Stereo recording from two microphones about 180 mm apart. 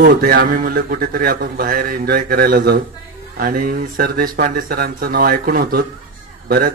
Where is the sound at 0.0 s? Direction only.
55° right (ahead or behind).